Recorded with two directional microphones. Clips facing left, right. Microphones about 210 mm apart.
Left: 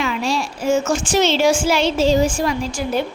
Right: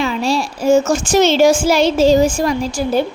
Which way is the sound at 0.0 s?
35° right (ahead or behind).